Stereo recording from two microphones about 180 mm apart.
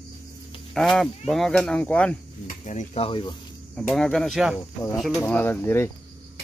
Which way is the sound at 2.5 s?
45° left (ahead or behind).